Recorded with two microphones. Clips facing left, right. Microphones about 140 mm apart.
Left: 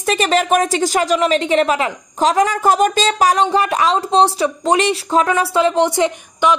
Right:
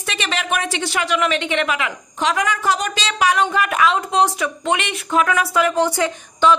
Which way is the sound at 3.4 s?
30° left (ahead or behind).